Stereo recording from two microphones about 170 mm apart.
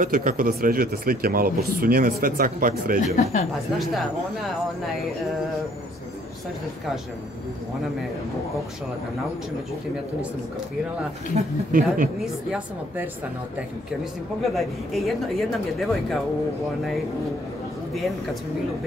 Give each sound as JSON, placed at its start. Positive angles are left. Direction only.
{"t": 0.0, "sound": "speech", "side_deg": -50}
{"t": 3.7, "sound": "speech", "side_deg": 0}
{"t": 11.3, "sound": "speech", "side_deg": -55}
{"t": 12.2, "sound": "speech", "side_deg": -5}
{"t": 14.4, "sound": "speech", "side_deg": 0}